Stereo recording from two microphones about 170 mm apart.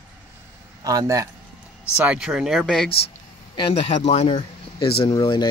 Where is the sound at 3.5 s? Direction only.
35° left (ahead or behind).